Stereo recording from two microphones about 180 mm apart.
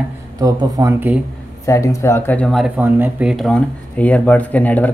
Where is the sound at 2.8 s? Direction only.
10° right (ahead or behind).